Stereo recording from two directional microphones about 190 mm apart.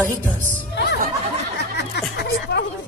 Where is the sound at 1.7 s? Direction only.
60° left (ahead or behind).